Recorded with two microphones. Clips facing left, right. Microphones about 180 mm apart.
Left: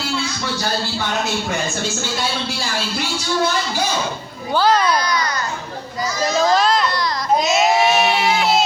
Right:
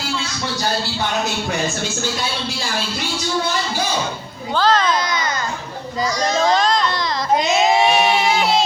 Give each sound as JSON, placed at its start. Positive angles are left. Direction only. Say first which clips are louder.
{"t": 4.5, "sound": "speech", "louder": "left 1 dB", "side_deg": 10}
{"t": 4.9, "sound": "baby cry", "louder": "left 1 dB", "side_deg": -25}
{"t": 6.1, "sound": "a sound", "louder": "left 2 dB", "side_deg": 5}